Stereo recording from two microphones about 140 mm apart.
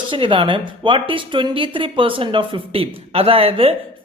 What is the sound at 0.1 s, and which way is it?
Speech, 40° right (ahead or behind).